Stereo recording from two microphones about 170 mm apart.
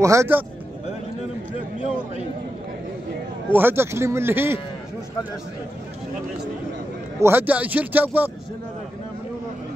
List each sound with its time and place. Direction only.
0.0 s speech: 15° right (ahead or behind)
3.5 s speech: 15° right (ahead or behind)
7.2 s speech: 15° right (ahead or behind)